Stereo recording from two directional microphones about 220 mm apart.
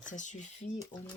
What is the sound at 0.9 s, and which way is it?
Speech, 20° left (ahead or behind).